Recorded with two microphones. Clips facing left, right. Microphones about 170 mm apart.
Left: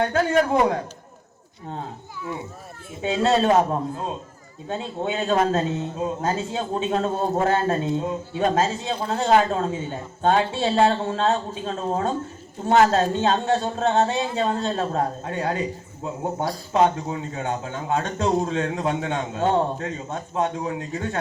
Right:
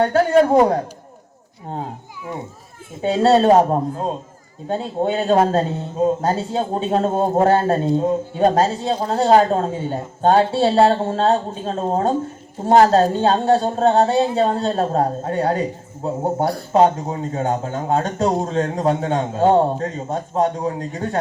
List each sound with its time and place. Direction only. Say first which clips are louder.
0.0 s a man's voice: right 6 dB; 35° right (ahead or behind)
3.0 s a man's voice: right 6 dB; 35° right (ahead or behind)